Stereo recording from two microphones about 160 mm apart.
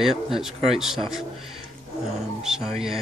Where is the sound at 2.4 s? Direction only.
5° right (ahead or behind).